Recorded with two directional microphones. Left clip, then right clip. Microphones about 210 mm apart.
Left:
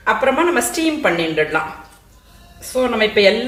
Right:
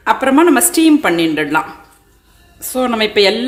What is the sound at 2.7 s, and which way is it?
Speech, 50° right (ahead or behind).